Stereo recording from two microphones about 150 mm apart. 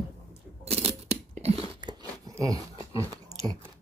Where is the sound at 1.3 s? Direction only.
45° right (ahead or behind).